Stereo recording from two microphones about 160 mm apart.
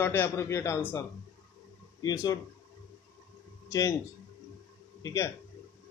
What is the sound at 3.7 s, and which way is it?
Speech, 20° left (ahead or behind).